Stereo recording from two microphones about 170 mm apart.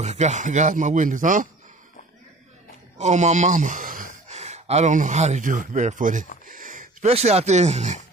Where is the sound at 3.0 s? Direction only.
45° right (ahead or behind).